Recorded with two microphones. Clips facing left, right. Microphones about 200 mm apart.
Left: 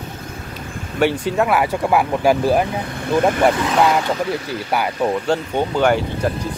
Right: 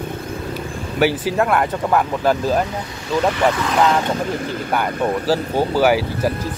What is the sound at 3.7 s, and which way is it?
Speech, 10° left (ahead or behind).